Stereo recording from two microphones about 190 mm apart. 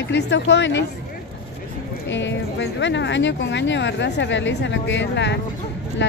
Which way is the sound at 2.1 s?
70° left (ahead or behind).